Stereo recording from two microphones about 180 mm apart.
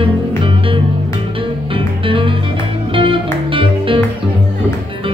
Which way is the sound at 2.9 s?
30° right (ahead or behind).